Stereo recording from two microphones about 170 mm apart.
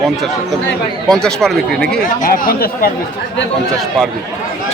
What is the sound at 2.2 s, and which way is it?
Speech, 55° left (ahead or behind).